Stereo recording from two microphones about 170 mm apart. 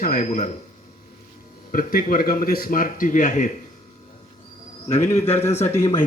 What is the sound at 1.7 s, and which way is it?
A man's voice, 55° left (ahead or behind).